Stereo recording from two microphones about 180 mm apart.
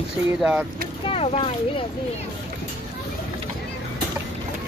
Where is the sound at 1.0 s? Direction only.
35° left (ahead or behind).